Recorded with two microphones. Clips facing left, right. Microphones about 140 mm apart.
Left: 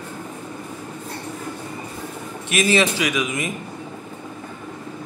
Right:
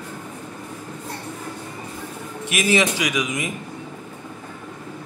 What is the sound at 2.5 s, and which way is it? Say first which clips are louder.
A man's voice: left 1 dB; 15° right (ahead or behind).